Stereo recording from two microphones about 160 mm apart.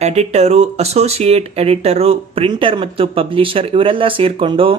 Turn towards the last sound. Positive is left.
turn(degrees=-35)  # may be behind; listen again after turning